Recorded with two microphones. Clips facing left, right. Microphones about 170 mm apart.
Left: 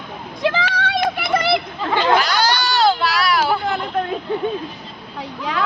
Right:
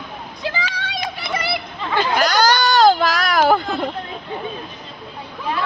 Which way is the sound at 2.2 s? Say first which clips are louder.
Right 2 dB; 45° right (ahead or behind).